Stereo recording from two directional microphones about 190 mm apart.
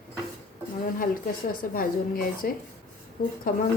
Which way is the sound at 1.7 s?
50° left (ahead or behind).